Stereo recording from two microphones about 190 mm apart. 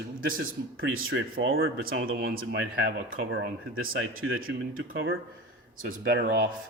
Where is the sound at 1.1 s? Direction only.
70° right (ahead or behind); by 2.9 s 55° right (ahead or behind).